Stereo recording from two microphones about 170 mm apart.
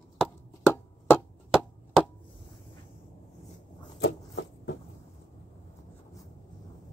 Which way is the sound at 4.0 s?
90° left.